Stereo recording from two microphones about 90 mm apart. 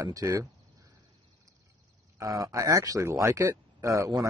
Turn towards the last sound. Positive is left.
turn(degrees=-35)  # may be behind; listen again after turning